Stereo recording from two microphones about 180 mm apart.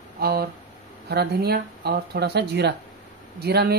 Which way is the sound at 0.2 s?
60° right (ahead or behind).